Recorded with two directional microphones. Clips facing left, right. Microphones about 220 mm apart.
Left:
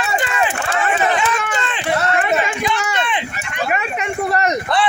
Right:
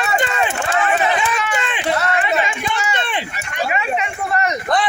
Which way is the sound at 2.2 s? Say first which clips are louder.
Left 2 dB; 50° left (ahead or behind).